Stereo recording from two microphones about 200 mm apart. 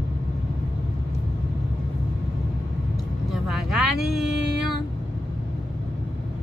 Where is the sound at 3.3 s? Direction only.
Centre (ahead or behind).